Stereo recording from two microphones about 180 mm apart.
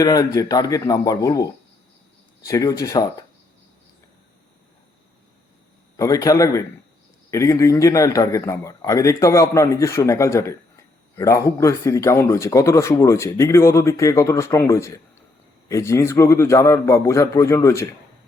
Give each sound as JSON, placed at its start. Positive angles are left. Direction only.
{"t": 0.0, "sound": "speech", "side_deg": 20}
{"t": 2.5, "sound": "speech", "side_deg": 20}
{"t": 6.0, "sound": "a man's voice", "side_deg": 20}